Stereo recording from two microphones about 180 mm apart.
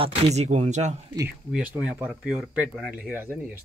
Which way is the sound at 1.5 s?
5° right (ahead or behind).